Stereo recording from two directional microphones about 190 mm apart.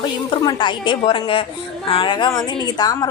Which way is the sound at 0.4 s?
25° left (ahead or behind).